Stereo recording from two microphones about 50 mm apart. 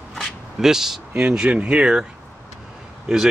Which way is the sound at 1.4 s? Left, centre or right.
Right.